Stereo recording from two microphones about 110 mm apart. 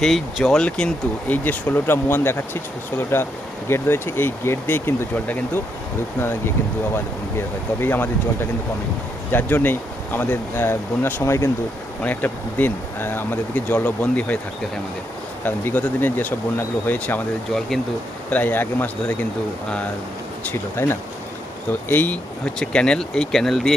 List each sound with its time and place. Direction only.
0.0 s speech: centre (ahead or behind)
15.4 s speech: 15° left (ahead or behind)
18.3 s speech: 15° left (ahead or behind)
20.5 s speech: 20° left (ahead or behind); by 23.7 s 5° left (ahead or behind)